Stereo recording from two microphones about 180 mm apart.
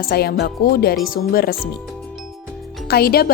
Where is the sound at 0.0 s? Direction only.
60° left (ahead or behind).